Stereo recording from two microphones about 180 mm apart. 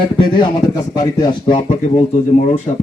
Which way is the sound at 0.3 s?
25° left (ahead or behind).